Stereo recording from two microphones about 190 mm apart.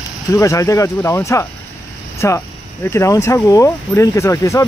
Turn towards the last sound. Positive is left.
turn(degrees=15)  # may be behind; listen again after turning